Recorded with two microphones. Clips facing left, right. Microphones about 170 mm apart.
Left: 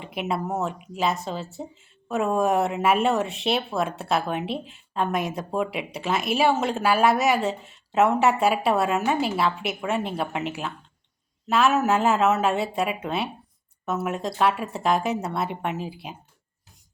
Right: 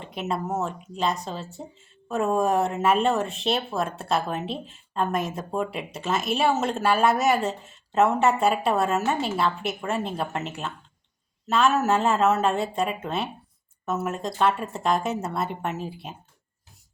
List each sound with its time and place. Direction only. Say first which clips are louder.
0.0 s speech: left 1 dB; 5° left (ahead or behind)